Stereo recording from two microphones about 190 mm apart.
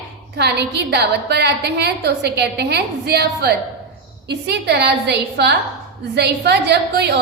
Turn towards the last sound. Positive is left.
turn(degrees=-65)  # may be behind; listen again after turning